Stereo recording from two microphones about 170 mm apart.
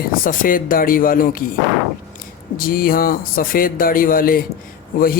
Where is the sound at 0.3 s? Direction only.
55° left (ahead or behind).